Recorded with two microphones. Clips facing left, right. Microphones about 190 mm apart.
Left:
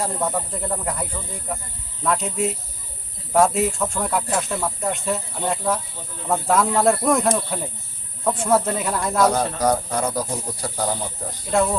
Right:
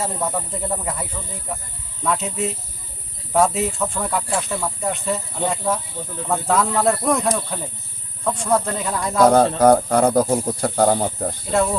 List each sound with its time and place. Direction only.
0.0 s speech: 5° right (ahead or behind)
9.6 s speech: 55° right (ahead or behind)
11.5 s speech: centre (ahead or behind)